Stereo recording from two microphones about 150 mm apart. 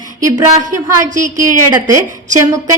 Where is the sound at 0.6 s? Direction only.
55° right (ahead or behind).